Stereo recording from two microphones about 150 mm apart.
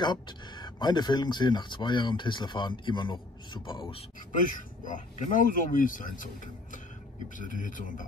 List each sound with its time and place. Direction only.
0.0 s speech: 30° left (ahead or behind)
4.5 s speech: 60° left (ahead or behind)